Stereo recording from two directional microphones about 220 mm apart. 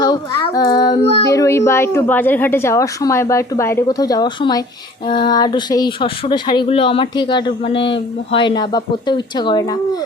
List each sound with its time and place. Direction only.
0.0 s child singing: 20° left (ahead or behind)
1.3 s a woman's voice: 15° left (ahead or behind)